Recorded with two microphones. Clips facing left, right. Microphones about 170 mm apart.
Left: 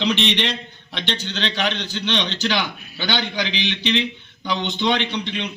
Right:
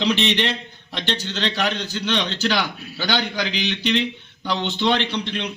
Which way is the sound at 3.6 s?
35° right (ahead or behind).